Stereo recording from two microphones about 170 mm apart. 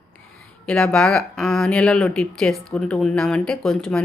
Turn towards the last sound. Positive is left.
turn(degrees=5)  # may be behind; listen again after turning